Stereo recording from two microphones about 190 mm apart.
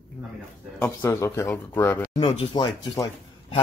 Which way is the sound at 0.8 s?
15° left (ahead or behind).